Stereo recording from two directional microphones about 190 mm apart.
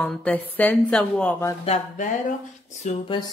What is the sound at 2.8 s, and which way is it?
Speech, 35° left (ahead or behind).